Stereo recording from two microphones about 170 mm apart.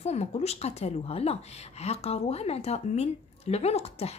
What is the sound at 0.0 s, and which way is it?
A woman's voice, 40° left (ahead or behind).